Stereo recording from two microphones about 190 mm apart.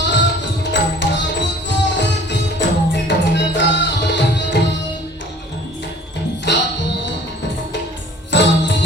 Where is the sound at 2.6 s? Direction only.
65° left (ahead or behind).